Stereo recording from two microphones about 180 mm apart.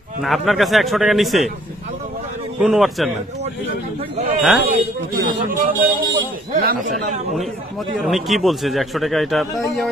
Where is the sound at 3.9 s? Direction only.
35° right (ahead or behind).